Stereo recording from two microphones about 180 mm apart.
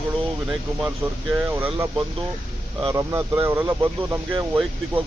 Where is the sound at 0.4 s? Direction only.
Centre (ahead or behind).